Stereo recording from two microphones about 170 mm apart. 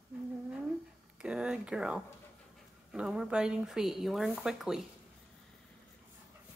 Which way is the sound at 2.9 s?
5° right (ahead or behind).